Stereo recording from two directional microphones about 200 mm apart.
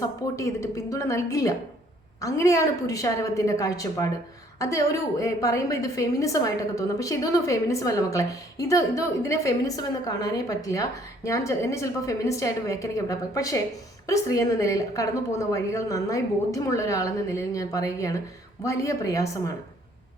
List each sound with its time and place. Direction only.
0.0 s a woman's voice: 15° left (ahead or behind)